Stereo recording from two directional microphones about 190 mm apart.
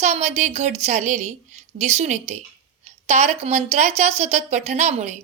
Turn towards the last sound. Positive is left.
turn(degrees=-35)  # may be behind; listen again after turning